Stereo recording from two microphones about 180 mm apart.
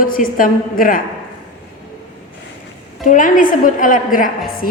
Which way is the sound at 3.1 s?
45° left (ahead or behind).